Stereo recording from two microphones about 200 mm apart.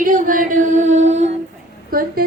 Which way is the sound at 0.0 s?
45° right (ahead or behind).